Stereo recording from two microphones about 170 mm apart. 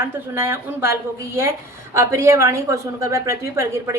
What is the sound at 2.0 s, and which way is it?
A woman's voice, 15° right (ahead or behind).